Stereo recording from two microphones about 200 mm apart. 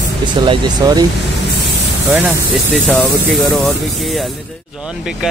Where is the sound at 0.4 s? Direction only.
20° right (ahead or behind).